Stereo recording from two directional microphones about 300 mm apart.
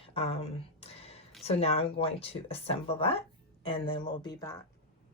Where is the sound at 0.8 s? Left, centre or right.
Left.